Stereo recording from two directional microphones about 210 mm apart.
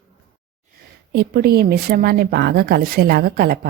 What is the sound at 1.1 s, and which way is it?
Speech, 50° right (ahead or behind).